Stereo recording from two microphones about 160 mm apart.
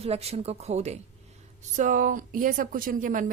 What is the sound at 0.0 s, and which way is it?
A woman's voice, 40° right (ahead or behind).